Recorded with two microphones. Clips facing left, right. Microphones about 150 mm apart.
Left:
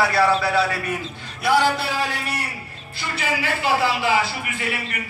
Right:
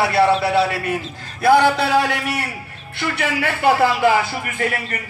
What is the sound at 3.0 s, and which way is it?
A man's voice, 60° right (ahead or behind).